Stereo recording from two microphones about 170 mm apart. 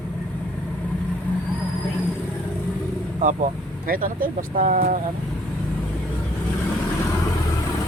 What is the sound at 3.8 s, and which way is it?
Speech, 55° right (ahead or behind).